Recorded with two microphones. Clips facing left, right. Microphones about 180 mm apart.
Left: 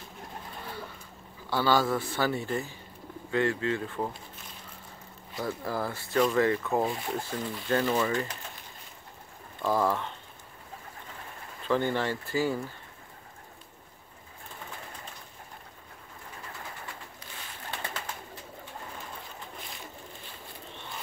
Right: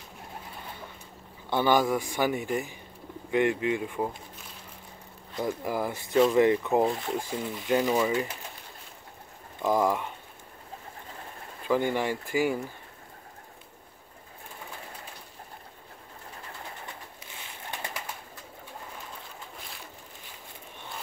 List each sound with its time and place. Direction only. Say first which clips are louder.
1.5 s speech: right 2 dB; 20° right (ahead or behind)
5.3 s speech: right 3 dB; 15° right (ahead or behind)
9.6 s speech: right 2 dB; 15° right (ahead or behind)
11.6 s speech: right 1 dB; 10° right (ahead or behind)